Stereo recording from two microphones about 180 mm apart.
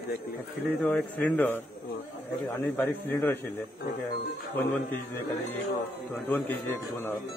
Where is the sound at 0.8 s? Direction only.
10° left (ahead or behind).